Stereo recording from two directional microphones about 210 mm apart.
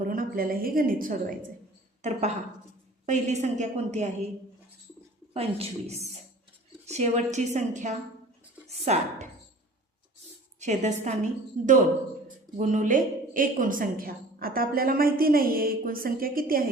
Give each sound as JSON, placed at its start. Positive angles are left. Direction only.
{"t": 0.1, "sound": "a woman's voice", "side_deg": -40}
{"t": 5.3, "sound": "a woman's voice", "side_deg": -30}
{"t": 10.6, "sound": "a woman's voice", "side_deg": -35}